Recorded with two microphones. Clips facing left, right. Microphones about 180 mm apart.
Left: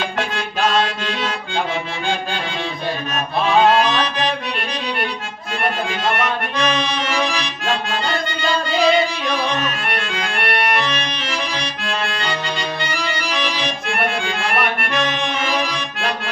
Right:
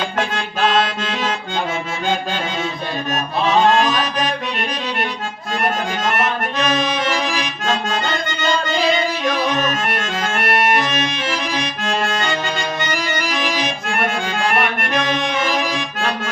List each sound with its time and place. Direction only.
3.7 s music: 45° right (ahead or behind)
5.6 s accordion: 45° right (ahead or behind)
9.2 s accordion: 45° right (ahead or behind)